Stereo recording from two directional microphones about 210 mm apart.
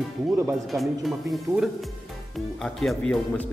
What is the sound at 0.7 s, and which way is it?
Speech, centre (ahead or behind).